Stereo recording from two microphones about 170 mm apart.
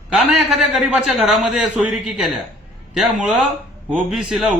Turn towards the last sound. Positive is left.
turn(degrees=0)  # may be behind; listen again after turning